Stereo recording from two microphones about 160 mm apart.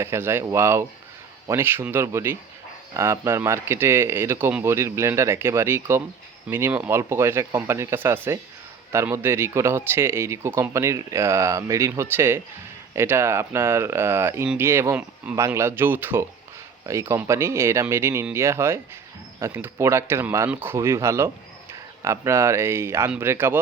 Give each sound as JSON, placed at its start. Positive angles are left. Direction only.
{"t": 0.0, "sound": "speech", "side_deg": -15}